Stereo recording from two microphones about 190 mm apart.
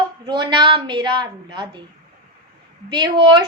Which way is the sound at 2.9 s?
20° right (ahead or behind).